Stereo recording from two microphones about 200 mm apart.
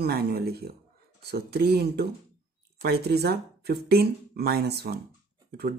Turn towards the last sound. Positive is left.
turn(degrees=-50)  # may be behind; listen again after turning